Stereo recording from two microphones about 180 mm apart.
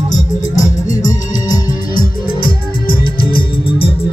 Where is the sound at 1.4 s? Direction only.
20° left (ahead or behind).